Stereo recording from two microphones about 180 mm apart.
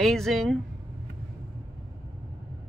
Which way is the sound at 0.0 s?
Centre (ahead or behind).